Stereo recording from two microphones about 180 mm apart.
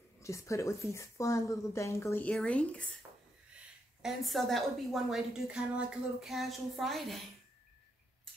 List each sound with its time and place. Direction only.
0.2 s a woman's voice: 15° left (ahead or behind); by 7.2 s centre (ahead or behind)